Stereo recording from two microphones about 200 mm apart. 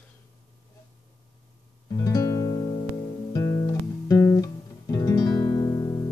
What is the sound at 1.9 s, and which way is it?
Music, 15° left (ahead or behind).